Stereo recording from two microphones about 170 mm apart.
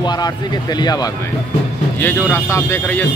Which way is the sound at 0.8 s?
25° left (ahead or behind).